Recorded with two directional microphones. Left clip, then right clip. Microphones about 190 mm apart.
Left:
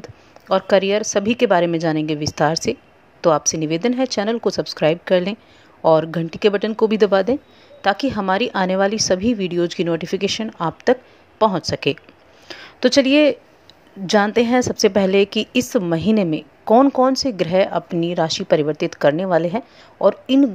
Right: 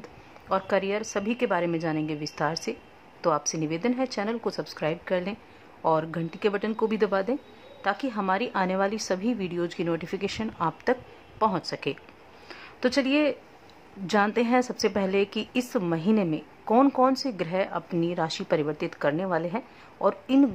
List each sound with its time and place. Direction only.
0.0 s a woman's voice: 25° left (ahead or behind)